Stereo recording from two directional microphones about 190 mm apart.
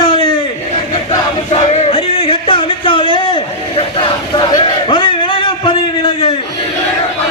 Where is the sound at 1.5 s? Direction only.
35° left (ahead or behind).